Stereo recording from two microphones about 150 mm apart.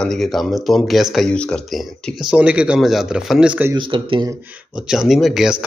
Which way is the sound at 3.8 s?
35° right (ahead or behind).